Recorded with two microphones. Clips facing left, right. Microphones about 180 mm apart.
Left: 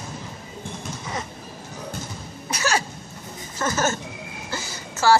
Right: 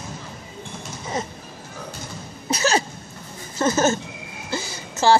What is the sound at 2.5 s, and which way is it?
Cough, 20° right (ahead or behind).